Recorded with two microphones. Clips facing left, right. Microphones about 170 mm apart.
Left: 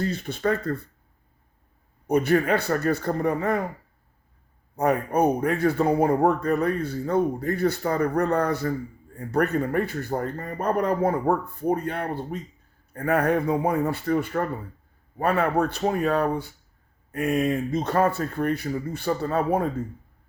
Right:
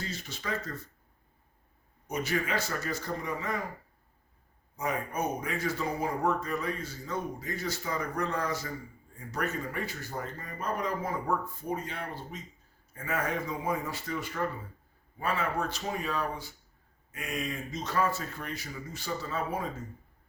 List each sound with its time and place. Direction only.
0.0 s speech: 55° left (ahead or behind)
2.0 s speech: 60° left (ahead or behind)
4.8 s speech: 60° left (ahead or behind)